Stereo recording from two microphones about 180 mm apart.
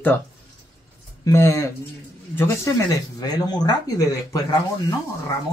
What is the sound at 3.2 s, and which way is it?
Speech, 20° left (ahead or behind).